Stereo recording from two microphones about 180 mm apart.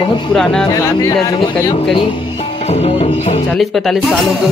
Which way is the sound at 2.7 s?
35° left (ahead or behind).